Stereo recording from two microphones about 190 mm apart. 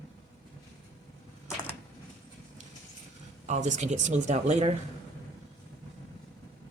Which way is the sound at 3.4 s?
40° right (ahead or behind).